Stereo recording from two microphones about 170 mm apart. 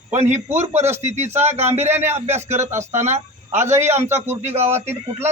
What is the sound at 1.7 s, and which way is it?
Speech, 15° right (ahead or behind).